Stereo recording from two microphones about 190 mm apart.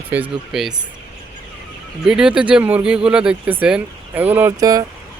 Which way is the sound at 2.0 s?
5° right (ahead or behind).